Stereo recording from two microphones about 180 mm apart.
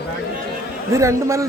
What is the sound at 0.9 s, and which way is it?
Speech, 15° right (ahead or behind).